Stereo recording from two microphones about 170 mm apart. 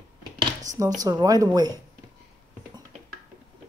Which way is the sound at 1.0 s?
20° right (ahead or behind).